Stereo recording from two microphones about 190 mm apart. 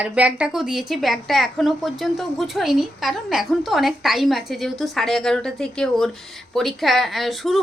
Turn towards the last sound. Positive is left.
turn(degrees=0)  # may be behind; listen again after turning